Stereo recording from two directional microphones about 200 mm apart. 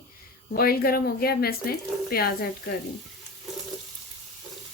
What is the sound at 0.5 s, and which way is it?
Speech, 50° left (ahead or behind).